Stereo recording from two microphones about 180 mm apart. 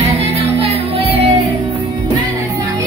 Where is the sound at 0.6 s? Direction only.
35° right (ahead or behind).